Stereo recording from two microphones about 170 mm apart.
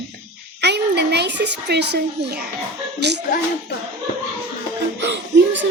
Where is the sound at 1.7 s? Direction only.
80° right.